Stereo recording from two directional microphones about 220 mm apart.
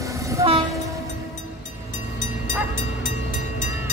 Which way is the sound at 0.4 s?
15° right (ahead or behind).